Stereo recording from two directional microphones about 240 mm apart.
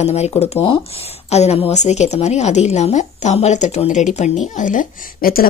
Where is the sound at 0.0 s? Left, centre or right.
Left.